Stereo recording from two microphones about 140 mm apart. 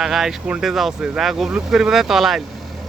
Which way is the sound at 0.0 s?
5° right (ahead or behind).